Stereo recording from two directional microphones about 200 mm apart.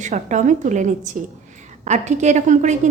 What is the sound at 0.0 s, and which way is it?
A woman's voice, 35° right (ahead or behind).